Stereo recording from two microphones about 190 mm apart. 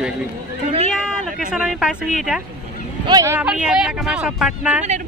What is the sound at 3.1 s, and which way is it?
Speech, 20° right (ahead or behind).